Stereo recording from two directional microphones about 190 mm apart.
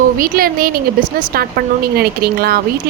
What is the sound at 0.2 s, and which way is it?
Speech, 50° right (ahead or behind).